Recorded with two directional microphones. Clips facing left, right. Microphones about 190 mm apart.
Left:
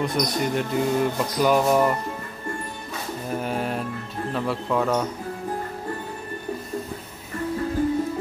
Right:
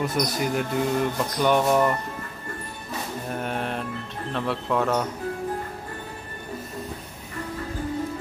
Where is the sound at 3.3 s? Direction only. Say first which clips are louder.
Left 3 dB; centre (ahead or behind).